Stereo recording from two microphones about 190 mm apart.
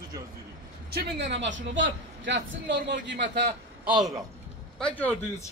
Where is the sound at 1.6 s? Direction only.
80° right.